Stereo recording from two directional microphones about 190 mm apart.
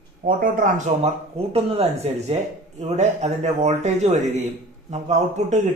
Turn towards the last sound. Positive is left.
turn(degrees=-40)  # may be behind; listen again after turning